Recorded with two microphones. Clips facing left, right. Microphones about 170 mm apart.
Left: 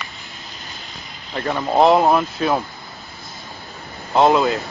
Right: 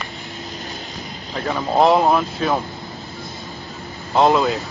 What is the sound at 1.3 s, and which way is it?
Speech, centre (ahead or behind).